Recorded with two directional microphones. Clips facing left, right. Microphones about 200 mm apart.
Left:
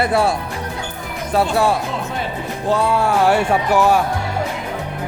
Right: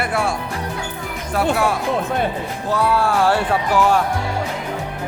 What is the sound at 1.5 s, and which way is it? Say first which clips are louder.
Speech: left 1 dB; 30° left (ahead or behind).